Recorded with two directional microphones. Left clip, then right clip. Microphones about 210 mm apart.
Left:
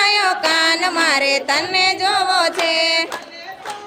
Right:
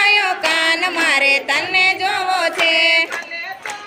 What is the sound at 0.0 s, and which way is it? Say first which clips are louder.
Music: right 1 dB; 15° left (ahead or behind).